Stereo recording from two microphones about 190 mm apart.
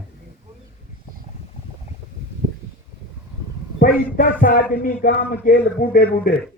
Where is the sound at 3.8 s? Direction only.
50° left (ahead or behind).